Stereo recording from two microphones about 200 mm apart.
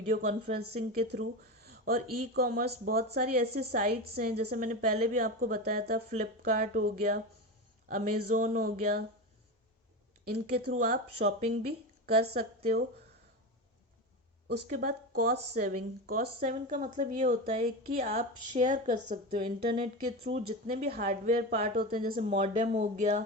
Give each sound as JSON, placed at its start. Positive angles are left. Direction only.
{"t": 0.1, "sound": "a woman's voice", "side_deg": -40}
{"t": 10.2, "sound": "a woman's voice", "side_deg": -50}
{"t": 14.4, "sound": "speech", "side_deg": -50}
{"t": 18.3, "sound": "a woman's voice", "side_deg": -35}